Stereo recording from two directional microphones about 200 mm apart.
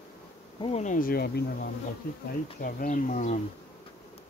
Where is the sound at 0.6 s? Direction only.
35° left (ahead or behind); by 1.7 s 50° left (ahead or behind).